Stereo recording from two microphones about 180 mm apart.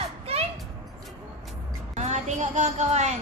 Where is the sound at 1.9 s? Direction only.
40° right (ahead or behind).